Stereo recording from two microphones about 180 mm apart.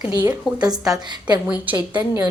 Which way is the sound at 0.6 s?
20° right (ahead or behind).